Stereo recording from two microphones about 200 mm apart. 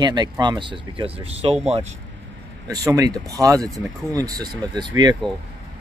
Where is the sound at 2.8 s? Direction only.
15° right (ahead or behind).